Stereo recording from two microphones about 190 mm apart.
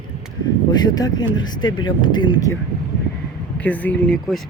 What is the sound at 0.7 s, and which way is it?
Speech, 20° left (ahead or behind).